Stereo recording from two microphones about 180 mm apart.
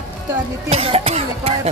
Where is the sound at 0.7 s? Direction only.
30° right (ahead or behind).